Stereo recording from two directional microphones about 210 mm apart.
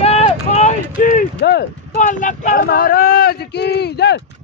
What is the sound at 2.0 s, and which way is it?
Speech, 35° left (ahead or behind).